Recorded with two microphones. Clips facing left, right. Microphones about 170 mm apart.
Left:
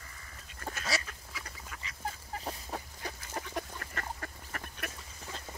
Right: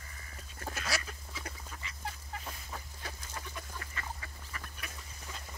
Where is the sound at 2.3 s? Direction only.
35° left (ahead or behind).